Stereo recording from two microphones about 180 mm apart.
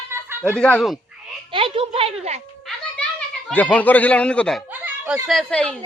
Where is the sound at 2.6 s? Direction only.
5° left (ahead or behind).